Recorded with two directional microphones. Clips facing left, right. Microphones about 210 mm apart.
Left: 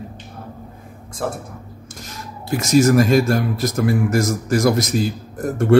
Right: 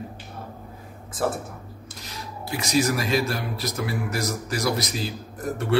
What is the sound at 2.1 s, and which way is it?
Speech, 45° left (ahead or behind).